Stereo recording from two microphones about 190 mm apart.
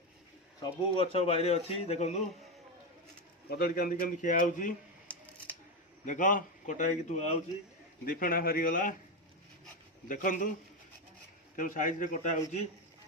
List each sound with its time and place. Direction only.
0.6 s speech: 30° left (ahead or behind)
3.5 s a man's voice: 50° left (ahead or behind)
5.0 s scissors: 5° left (ahead or behind)
6.1 s a man's voice: 45° left (ahead or behind)
10.1 s a man's voice: 45° left (ahead or behind)
11.5 s a man's voice: 45° left (ahead or behind)